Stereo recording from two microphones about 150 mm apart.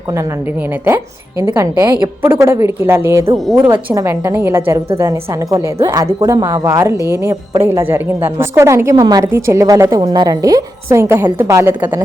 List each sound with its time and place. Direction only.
0.1 s a woman's voice: 20° right (ahead or behind)
0.9 s a woman's voice: 25° right (ahead or behind)